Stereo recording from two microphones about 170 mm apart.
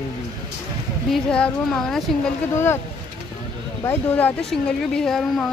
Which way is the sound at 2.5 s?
15° left (ahead or behind).